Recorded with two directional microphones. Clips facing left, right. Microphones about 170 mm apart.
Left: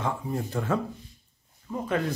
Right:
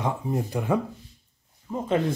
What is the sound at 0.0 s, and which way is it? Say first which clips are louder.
Speech: right 3 dB; 20° right (ahead or behind).